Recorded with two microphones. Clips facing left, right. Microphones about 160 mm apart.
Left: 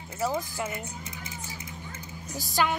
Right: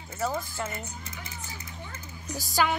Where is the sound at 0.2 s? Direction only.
15° left (ahead or behind).